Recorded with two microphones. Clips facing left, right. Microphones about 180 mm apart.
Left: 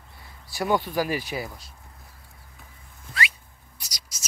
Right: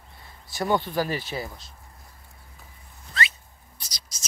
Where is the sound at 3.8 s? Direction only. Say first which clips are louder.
Left 1 dB; 10° left (ahead or behind).